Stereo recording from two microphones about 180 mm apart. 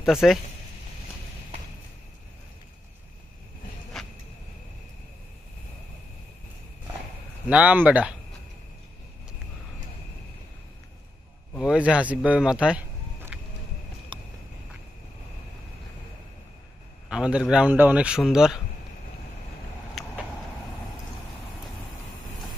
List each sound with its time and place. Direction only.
0.0 s speech: centre (ahead or behind)
3.9 s insect: centre (ahead or behind)
7.4 s speech: 5° right (ahead or behind)
11.5 s speech: 5° right (ahead or behind)
14.1 s a sound: 25° right (ahead or behind)
17.1 s speech: 5° right (ahead or behind)
20.0 s vehicle: centre (ahead or behind)